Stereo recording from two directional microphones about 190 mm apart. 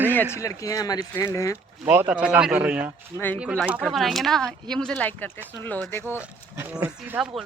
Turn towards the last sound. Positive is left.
turn(degrees=-5)  # may be behind; listen again after turning